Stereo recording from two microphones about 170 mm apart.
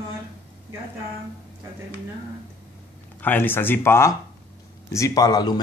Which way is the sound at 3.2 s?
10° left (ahead or behind).